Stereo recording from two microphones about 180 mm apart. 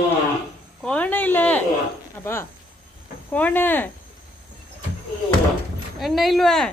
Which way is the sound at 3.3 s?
10° left (ahead or behind).